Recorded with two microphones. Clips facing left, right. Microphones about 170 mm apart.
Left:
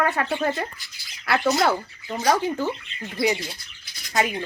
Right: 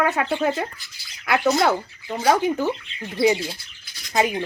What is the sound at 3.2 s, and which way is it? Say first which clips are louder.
Speech: right 4 dB; 25° right (ahead or behind).